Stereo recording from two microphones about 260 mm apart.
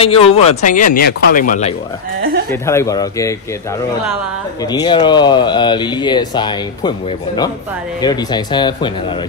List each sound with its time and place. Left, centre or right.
0.0 s speech: left
2.5 s speech: centre
4.6 s speech: centre